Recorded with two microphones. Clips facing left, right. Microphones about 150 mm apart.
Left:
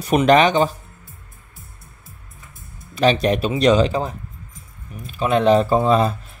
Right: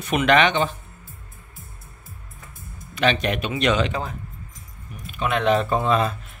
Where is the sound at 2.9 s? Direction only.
35° left (ahead or behind).